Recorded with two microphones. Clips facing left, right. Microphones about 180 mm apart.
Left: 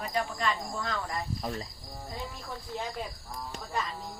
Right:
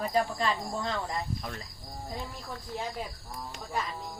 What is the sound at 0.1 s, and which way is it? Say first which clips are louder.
Speech: even; 30° right (ahead or behind).